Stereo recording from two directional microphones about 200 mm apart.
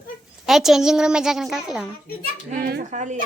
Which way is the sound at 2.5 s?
50° right (ahead or behind).